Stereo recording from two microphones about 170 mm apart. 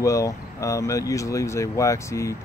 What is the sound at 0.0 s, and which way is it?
Speech, 20° left (ahead or behind).